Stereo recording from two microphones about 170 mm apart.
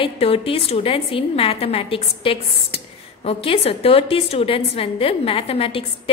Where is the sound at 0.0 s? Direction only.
35° left (ahead or behind).